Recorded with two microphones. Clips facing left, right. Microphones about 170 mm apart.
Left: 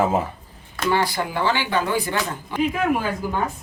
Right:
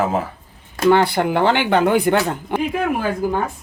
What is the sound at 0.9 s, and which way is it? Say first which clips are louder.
Speech: right 6 dB; 60° right (ahead or behind).